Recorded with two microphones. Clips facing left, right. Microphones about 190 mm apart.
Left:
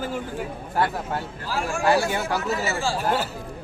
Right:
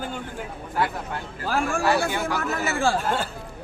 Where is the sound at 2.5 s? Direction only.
55° right (ahead or behind).